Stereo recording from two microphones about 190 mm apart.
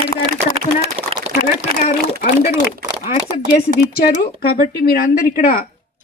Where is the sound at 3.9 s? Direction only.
50° left (ahead or behind).